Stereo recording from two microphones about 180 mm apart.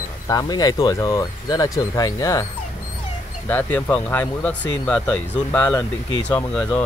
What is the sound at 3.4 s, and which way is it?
Speech, 10° left (ahead or behind).